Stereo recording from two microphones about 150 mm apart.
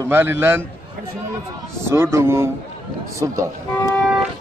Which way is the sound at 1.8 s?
15° right (ahead or behind).